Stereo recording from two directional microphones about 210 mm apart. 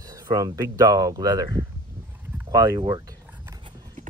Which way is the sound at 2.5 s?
15° right (ahead or behind).